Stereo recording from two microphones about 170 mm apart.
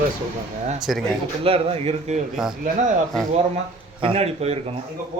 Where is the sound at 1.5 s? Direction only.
35° right (ahead or behind).